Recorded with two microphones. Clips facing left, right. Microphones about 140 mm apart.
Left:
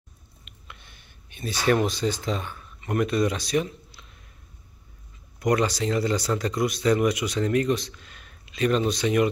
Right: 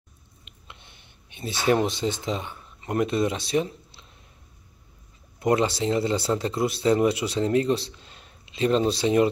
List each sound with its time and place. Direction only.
0.5 s speech: 25° right (ahead or behind)
5.4 s speech: 25° right (ahead or behind)